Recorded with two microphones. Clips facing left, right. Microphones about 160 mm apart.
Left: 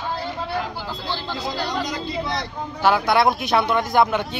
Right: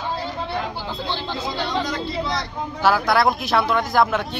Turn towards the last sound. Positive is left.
turn(degrees=0)  # may be behind; listen again after turning